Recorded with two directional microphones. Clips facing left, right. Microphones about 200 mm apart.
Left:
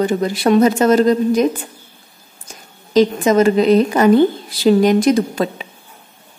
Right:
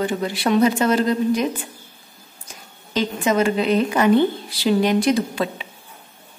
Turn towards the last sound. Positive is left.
turn(degrees=45)  # may be behind; listen again after turning